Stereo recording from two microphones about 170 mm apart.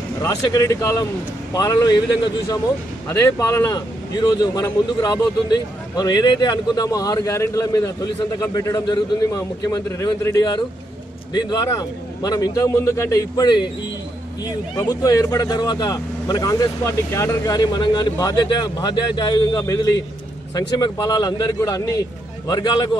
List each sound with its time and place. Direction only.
0.2 s speech: 20° left (ahead or behind)